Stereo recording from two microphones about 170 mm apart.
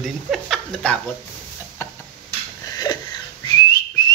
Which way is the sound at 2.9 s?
25° left (ahead or behind).